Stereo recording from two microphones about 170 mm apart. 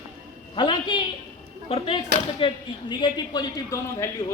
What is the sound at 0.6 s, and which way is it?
Speech, 25° left (ahead or behind).